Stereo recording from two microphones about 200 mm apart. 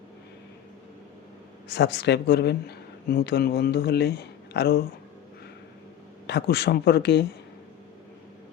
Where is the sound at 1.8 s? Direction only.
55° left (ahead or behind).